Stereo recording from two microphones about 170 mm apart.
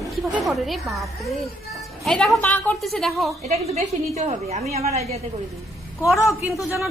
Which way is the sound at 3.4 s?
40° right (ahead or behind).